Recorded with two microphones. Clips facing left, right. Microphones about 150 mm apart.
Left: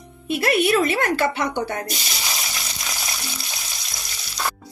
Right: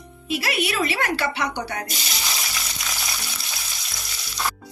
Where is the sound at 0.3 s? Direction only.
55° left (ahead or behind).